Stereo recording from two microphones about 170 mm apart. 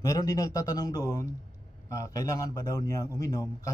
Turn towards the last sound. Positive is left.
turn(degrees=20)  # may be behind; listen again after turning